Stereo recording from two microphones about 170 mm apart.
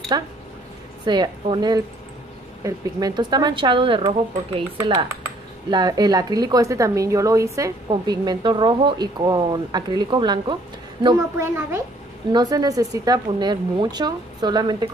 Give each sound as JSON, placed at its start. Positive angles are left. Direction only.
{"t": 0.1, "sound": "a woman's voice", "side_deg": -25}